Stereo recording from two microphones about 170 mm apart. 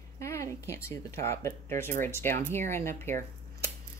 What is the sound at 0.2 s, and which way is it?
Speech, 15° left (ahead or behind).